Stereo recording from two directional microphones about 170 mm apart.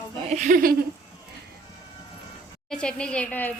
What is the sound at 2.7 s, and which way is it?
Speech, 5° left (ahead or behind).